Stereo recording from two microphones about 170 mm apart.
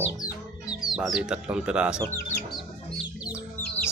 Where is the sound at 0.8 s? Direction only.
Centre (ahead or behind).